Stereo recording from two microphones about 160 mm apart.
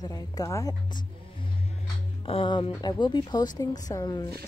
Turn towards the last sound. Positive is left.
turn(degrees=25)  # may be behind; listen again after turning